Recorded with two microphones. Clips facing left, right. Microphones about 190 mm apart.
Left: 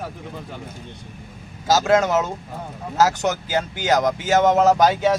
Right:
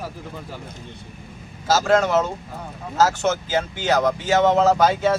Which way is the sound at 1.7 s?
20° left (ahead or behind).